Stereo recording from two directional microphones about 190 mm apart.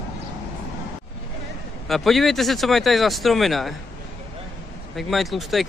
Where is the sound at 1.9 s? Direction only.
Centre (ahead or behind).